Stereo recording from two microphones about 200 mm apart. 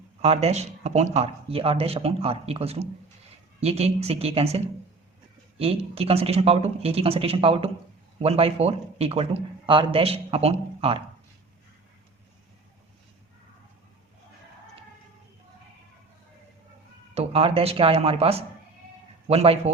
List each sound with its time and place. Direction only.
0.2 s a man's voice: 30° right (ahead or behind)
17.2 s a man's voice: 30° right (ahead or behind)